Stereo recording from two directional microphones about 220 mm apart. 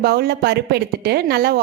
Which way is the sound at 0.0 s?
45° right (ahead or behind).